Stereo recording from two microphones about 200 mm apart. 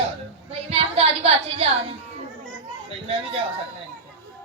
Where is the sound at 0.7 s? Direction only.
30° right (ahead or behind).